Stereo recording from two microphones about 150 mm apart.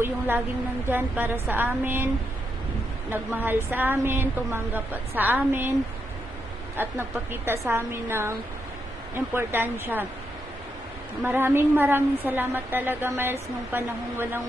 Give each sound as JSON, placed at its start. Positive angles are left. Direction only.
{"t": 0.8, "sound": "a woman's voice", "side_deg": -15}
{"t": 3.1, "sound": "a woman's voice", "side_deg": -15}
{"t": 6.8, "sound": "a woman's voice", "side_deg": -15}
{"t": 11.2, "sound": "a woman's voice", "side_deg": -15}